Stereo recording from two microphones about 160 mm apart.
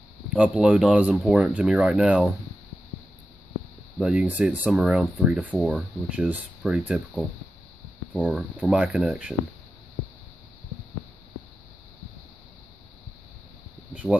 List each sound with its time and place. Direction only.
0.3 s speech: 5° right (ahead or behind)
4.0 s speech: 5° right (ahead or behind)
8.2 s speech: 10° right (ahead or behind)